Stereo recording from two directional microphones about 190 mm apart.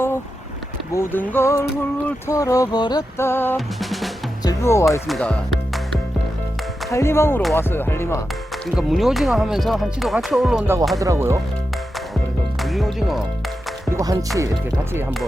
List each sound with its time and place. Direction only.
0.9 s a sound: 10° left (ahead or behind)
3.8 s music: centre (ahead or behind)
4.4 s speech: 15° left (ahead or behind)
5.0 s speech: 5° left (ahead or behind)
6.9 s a sound: 15° left (ahead or behind)
8.6 s speech: centre (ahead or behind)
10.9 s speech: 15° right (ahead or behind)
12.5 s speech: centre (ahead or behind)
13.9 s speech: 20° right (ahead or behind)